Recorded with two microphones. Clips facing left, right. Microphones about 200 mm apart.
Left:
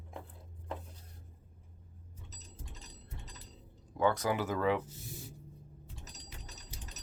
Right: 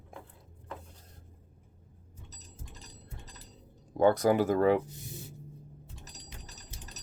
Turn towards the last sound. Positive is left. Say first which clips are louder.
# right 1 dB
turn(degrees=-35)  # may be behind; listen again after turning